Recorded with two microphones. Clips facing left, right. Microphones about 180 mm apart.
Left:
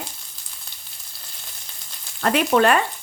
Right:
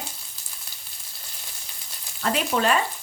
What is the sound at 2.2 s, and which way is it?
Speech, 65° left (ahead or behind).